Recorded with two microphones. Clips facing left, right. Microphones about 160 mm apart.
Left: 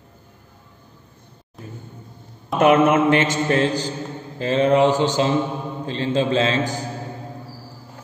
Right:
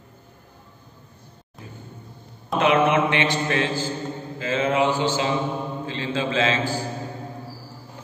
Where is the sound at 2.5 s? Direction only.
45° left (ahead or behind).